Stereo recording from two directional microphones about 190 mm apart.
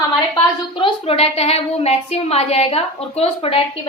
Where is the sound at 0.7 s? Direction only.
30° left (ahead or behind).